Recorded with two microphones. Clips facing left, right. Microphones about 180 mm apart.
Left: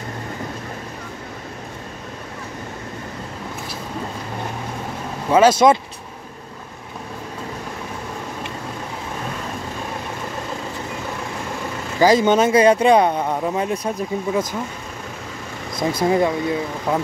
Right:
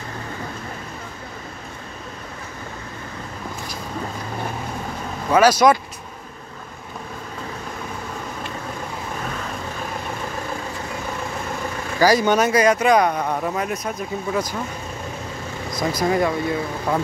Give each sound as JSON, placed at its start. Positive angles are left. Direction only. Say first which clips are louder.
{"t": 5.3, "sound": "speech", "louder": "left 2 dB", "side_deg": 25}
{"t": 12.0, "sound": "speech", "louder": "left 2 dB", "side_deg": 25}
{"t": 15.9, "sound": "speech", "louder": "left 2 dB", "side_deg": 25}
{"t": 16.9, "sound": "speech", "louder": "left 1 dB", "side_deg": 5}